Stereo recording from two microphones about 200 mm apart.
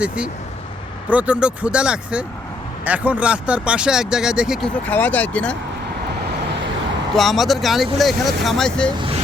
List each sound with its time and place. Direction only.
1.1 s speech: 5° right (ahead or behind)
4.9 s speech: 10° left (ahead or behind)
7.2 s speech: centre (ahead or behind)
9.0 s vehicle: 25° right (ahead or behind)